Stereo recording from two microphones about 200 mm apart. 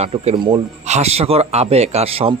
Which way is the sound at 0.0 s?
30° right (ahead or behind).